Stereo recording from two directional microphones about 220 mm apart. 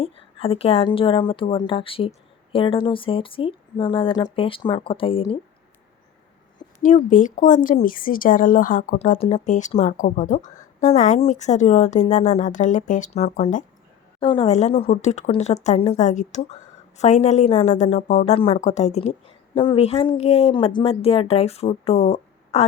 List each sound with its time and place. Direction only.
0.0 s a woman's voice: 25° left (ahead or behind)
6.8 s speech: 35° left (ahead or behind)
14.2 s a woman's voice: 25° left (ahead or behind)